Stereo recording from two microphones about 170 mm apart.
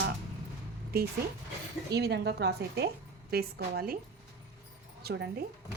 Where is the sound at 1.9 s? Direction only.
80° right.